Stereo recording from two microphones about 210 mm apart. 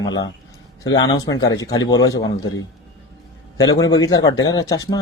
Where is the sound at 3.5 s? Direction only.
15° left (ahead or behind).